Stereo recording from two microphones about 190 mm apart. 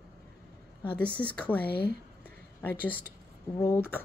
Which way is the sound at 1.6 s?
55° left (ahead or behind).